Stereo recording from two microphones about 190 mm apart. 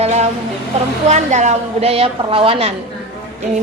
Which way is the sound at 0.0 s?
35° right (ahead or behind).